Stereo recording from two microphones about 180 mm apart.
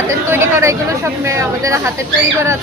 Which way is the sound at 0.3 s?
15° right (ahead or behind).